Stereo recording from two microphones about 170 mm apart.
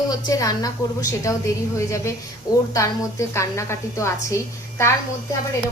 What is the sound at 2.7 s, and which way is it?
A woman's voice, 20° left (ahead or behind).